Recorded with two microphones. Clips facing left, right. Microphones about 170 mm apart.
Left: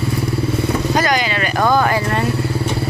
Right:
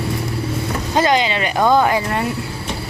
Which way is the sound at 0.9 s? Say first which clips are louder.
Right 5 dB; 25° right (ahead or behind).